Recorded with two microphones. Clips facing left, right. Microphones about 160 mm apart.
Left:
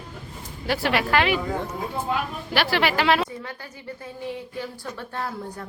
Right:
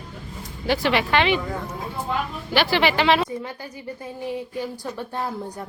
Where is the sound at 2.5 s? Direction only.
Centre (ahead or behind).